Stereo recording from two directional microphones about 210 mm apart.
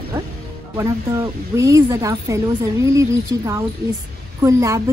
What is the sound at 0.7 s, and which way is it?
Speech, 15° right (ahead or behind).